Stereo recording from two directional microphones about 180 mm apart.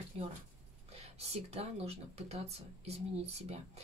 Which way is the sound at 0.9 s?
35° right (ahead or behind).